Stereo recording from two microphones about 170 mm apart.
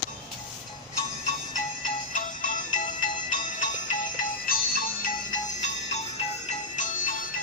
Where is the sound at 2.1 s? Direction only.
50° left (ahead or behind).